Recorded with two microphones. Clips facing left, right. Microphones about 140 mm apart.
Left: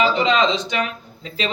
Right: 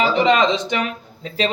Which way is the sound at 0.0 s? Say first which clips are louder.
Right 2 dB; 55° right (ahead or behind).